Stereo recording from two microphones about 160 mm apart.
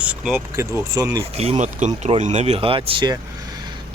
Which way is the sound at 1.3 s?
40° right (ahead or behind).